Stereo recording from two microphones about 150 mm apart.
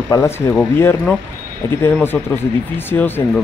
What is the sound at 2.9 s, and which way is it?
Speech, 15° left (ahead or behind).